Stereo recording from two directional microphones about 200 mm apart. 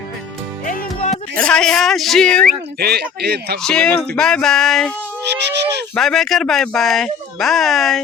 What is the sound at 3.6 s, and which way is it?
Speech, 5° left (ahead or behind).